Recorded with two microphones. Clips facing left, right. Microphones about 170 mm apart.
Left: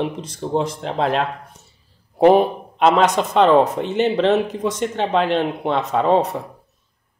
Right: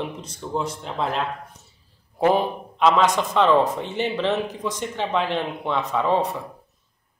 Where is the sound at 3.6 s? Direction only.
65° left (ahead or behind).